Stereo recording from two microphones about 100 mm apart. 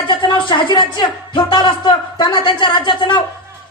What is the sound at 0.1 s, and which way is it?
A woman's voice, 50° left (ahead or behind).